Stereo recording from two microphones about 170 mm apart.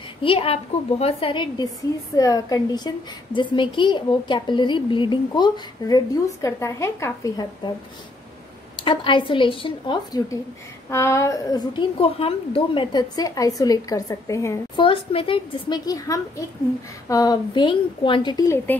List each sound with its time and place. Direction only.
0.2 s a woman's voice: 35° left (ahead or behind)
8.8 s a woman's voice: 30° left (ahead or behind)
14.8 s a woman's voice: 30° left (ahead or behind)